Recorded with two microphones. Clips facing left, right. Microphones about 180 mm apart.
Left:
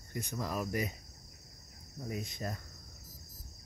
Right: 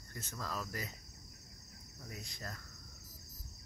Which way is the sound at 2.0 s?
20° left (ahead or behind).